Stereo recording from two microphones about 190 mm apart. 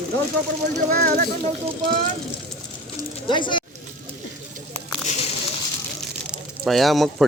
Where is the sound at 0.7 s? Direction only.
45° right (ahead or behind).